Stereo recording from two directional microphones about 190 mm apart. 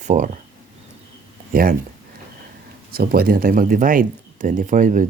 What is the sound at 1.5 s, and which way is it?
Speech, 50° right (ahead or behind).